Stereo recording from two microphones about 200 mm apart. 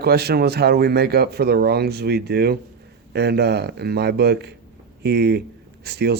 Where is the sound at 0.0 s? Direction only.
50° right (ahead or behind).